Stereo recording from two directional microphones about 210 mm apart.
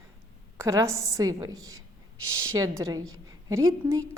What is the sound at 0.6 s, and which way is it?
A woman's voice, 15° right (ahead or behind).